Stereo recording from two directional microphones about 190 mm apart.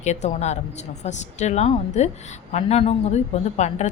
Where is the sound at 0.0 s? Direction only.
35° left (ahead or behind).